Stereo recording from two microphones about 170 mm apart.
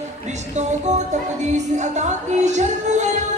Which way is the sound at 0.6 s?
45° right (ahead or behind).